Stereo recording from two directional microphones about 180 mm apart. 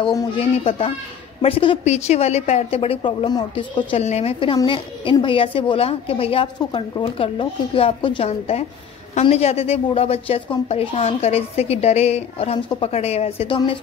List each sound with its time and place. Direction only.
0.0 s a woman's voice: 20° left (ahead or behind)
0.7 s a woman's voice: 35° left (ahead or behind)